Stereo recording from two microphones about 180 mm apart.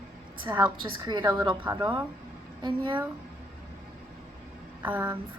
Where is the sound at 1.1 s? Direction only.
25° right (ahead or behind).